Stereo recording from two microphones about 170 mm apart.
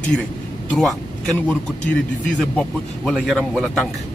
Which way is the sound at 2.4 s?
5° left (ahead or behind).